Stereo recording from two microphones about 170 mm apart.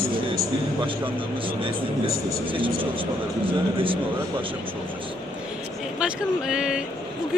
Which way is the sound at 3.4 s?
30° right (ahead or behind).